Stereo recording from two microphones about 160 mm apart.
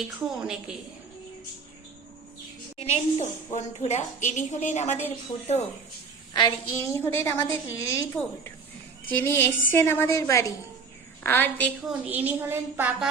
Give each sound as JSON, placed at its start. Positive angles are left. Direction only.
{"t": 0.3, "sound": "a woman's voice", "side_deg": -5}
{"t": 2.7, "sound": "a woman's voice", "side_deg": 40}
{"t": 6.3, "sound": "a woman's voice", "side_deg": 25}
{"t": 11.9, "sound": "a woman's voice", "side_deg": -10}